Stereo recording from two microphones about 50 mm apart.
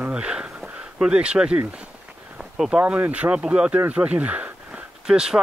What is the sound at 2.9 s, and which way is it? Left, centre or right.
Speech, right.